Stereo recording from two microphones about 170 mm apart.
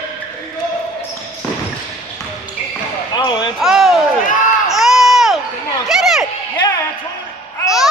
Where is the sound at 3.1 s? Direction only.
25° left (ahead or behind).